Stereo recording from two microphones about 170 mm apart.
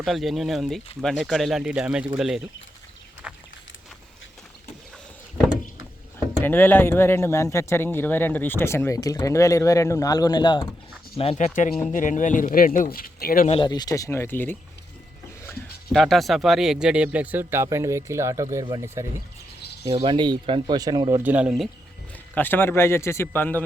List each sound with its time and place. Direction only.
0.0 s speech: centre (ahead or behind)
3.2 s a sound: 5° right (ahead or behind)
6.1 s speech: 10° left (ahead or behind); by 11.4 s 35° left (ahead or behind)
11.5 s a man's voice: 50° left (ahead or behind)
13.5 s speech: 25° left (ahead or behind)
15.9 s speech: centre (ahead or behind); by 21.2 s 25° right (ahead or behind)
21.2 s speech: 5° right (ahead or behind)
22.4 s speech: 10° left (ahead or behind)